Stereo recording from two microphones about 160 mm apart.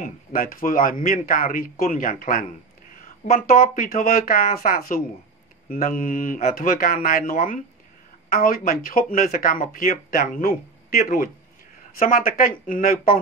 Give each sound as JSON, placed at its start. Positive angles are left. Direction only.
{"t": 0.0, "sound": "speech", "side_deg": 60}